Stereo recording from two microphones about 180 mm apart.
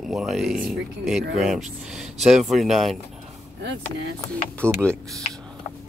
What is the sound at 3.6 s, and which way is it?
Speech, 65° right (ahead or behind).